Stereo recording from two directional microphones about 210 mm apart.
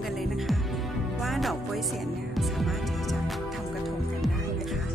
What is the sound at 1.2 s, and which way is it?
Speech, centre (ahead or behind).